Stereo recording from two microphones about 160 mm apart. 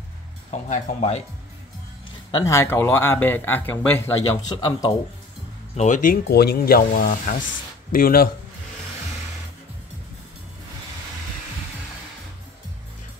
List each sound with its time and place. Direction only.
0.5 s speech: 45° left (ahead or behind)
2.3 s speech: 20° left (ahead or behind)
4.6 s speech: 25° left (ahead or behind)
5.8 s speech: 55° left (ahead or behind)
6.2 s speech: 85° left; by 8.3 s 65° left (ahead or behind)